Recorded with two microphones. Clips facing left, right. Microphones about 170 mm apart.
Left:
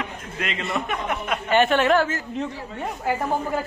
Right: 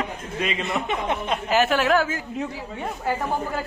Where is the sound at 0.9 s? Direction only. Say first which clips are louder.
Right 1 dB; 30° right (ahead or behind).